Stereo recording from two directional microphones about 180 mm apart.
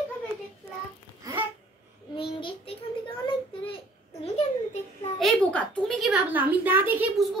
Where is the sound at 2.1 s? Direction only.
30° left (ahead or behind).